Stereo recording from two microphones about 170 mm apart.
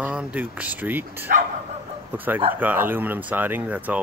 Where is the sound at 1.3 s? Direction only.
60° right (ahead or behind).